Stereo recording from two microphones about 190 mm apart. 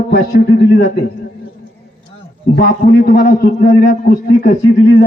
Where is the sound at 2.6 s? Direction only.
45° left (ahead or behind).